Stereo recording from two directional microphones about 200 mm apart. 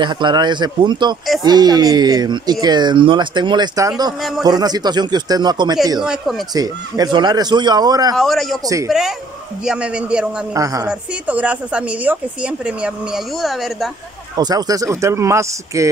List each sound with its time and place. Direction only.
0.0 s speech: 25° right (ahead or behind)
6.0 s speech: centre (ahead or behind)
6.5 s speech: 20° right (ahead or behind)
8.2 s speech: centre (ahead or behind)
10.5 s speech: 15° right (ahead or behind); by 13.8 s centre (ahead or behind)
14.3 s speech: 20° right (ahead or behind)